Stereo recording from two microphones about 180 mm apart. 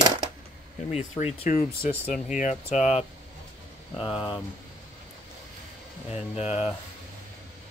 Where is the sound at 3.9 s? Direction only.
30° left (ahead or behind).